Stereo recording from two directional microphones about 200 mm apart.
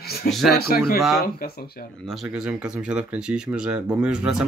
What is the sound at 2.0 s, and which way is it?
Speech, 5° right (ahead or behind).